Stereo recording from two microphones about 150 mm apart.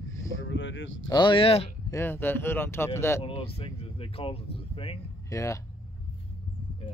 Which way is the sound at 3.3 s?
40° left (ahead or behind).